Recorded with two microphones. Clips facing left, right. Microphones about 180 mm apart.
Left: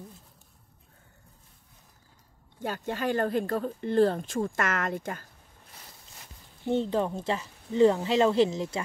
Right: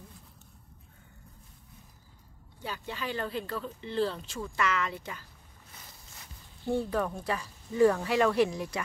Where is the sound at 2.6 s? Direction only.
50° left (ahead or behind).